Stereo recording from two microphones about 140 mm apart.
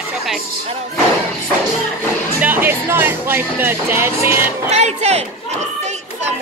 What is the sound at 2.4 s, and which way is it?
Speech, 15° right (ahead or behind).